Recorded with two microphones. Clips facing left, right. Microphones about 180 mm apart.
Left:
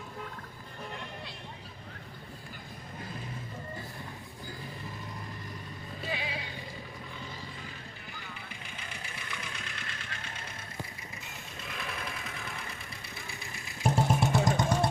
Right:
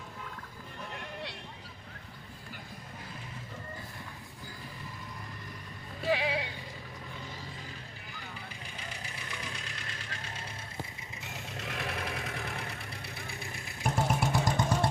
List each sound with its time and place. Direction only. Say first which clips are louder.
6.1 s music: right 8 dB; 80° right
8.9 s vehicle: left 1 dB; 35° right (ahead or behind)
11.5 s vehicle: right 3 dB; 70° right (ahead or behind)
13.8 s vehicle: left 3 dB; 30° left (ahead or behind)